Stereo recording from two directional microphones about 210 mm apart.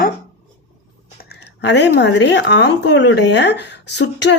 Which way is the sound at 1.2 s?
50° left (ahead or behind).